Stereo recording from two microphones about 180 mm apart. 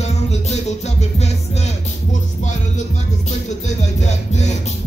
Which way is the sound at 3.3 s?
40° left (ahead or behind).